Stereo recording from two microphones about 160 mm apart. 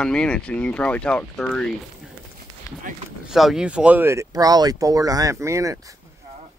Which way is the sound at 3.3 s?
Centre (ahead or behind).